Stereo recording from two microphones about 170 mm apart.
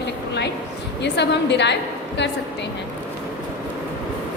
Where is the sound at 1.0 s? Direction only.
90° left.